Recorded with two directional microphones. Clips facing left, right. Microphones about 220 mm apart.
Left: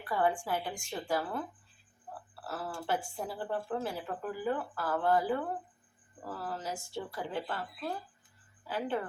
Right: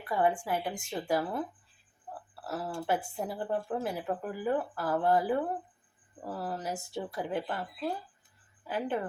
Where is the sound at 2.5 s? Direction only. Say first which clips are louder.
Right 3 dB; 20° right (ahead or behind).